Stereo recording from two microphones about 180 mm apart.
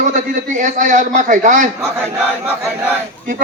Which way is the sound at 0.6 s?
45° right (ahead or behind).